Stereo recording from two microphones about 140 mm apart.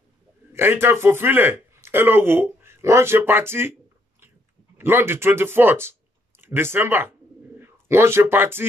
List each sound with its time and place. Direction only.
0.5 s a man's voice: 15° right (ahead or behind)
4.7 s speech: 15° right (ahead or behind)